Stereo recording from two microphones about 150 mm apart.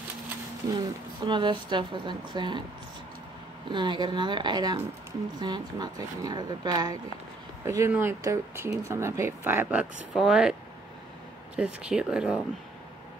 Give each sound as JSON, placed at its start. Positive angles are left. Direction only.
{"t": 0.7, "sound": "a woman's voice", "side_deg": -30}
{"t": 3.7, "sound": "a woman's voice", "side_deg": -30}
{"t": 11.5, "sound": "speech", "side_deg": -5}